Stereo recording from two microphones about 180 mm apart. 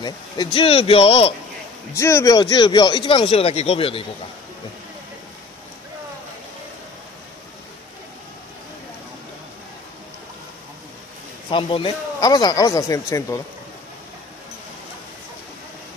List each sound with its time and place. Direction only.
0.0 s speech: 25° left (ahead or behind)
2.0 s speech: 15° left (ahead or behind); by 4.0 s 30° left (ahead or behind)
11.5 s speech: 30° left (ahead or behind)